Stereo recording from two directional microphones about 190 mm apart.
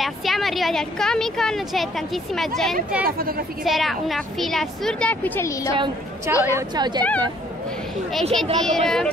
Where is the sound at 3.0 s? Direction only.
50° right (ahead or behind).